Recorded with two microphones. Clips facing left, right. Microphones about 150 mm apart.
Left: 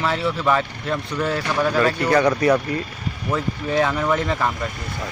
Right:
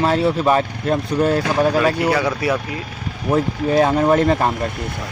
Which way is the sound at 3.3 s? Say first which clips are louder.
Right 5 dB; 35° right (ahead or behind).